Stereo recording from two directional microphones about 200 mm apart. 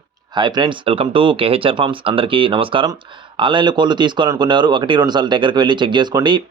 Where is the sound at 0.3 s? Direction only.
20° right (ahead or behind).